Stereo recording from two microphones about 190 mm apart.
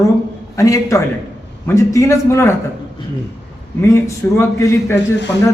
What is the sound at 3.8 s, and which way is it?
A man's voice, 15° left (ahead or behind).